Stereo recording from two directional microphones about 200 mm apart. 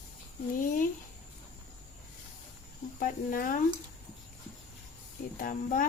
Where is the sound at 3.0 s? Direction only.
45° left (ahead or behind).